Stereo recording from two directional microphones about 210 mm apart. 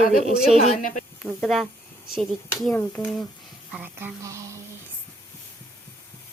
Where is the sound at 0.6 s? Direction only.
35° left (ahead or behind).